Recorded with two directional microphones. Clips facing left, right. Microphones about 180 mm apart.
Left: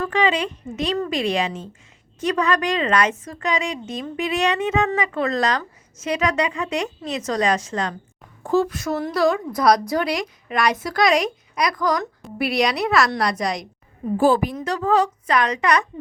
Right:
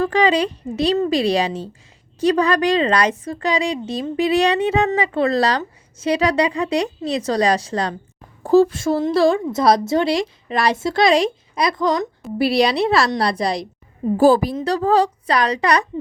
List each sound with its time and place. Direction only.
0.0 s a woman's voice: 35° right (ahead or behind)